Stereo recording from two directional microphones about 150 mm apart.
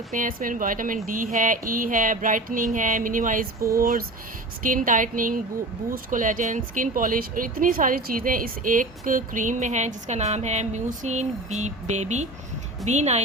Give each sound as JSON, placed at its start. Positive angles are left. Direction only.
{"t": 0.1, "sound": "speech", "side_deg": -65}
{"t": 3.8, "sound": "speech", "side_deg": -75}